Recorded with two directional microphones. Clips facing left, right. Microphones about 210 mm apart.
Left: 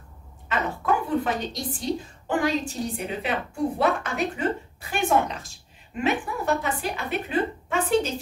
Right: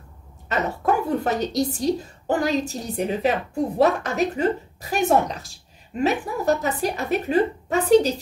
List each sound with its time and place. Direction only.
1.0 s a woman's voice: 40° right (ahead or behind)